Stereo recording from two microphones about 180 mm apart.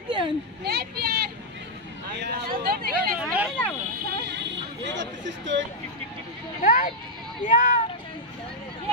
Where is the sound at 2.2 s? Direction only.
60° right (ahead or behind).